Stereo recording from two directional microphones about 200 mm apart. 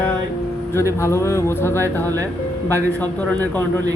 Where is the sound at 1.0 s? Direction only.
15° left (ahead or behind).